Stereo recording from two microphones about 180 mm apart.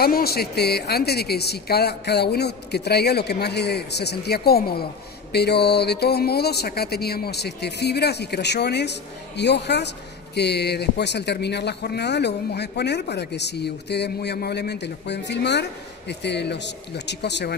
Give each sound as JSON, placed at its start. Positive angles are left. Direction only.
{"t": 0.0, "sound": "speech", "side_deg": 60}